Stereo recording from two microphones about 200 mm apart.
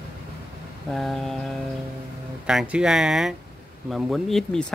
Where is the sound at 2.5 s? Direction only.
5° right (ahead or behind).